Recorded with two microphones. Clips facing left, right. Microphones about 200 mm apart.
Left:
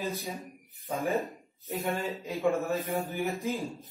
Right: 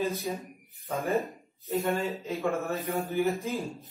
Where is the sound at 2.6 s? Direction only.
Centre (ahead or behind).